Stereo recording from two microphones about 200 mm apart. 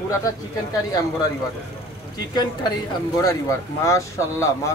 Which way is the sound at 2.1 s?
20° left (ahead or behind).